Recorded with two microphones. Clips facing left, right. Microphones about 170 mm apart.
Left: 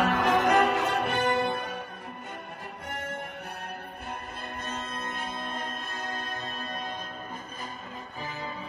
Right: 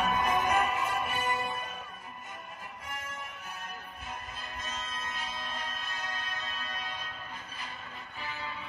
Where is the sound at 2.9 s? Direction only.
65° left (ahead or behind).